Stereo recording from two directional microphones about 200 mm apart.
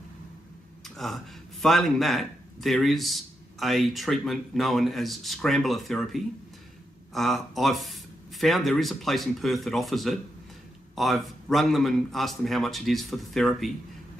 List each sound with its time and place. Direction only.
0.8 s speech: centre (ahead or behind)